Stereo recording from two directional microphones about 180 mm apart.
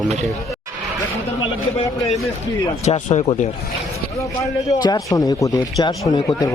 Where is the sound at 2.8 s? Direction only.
35° left (ahead or behind).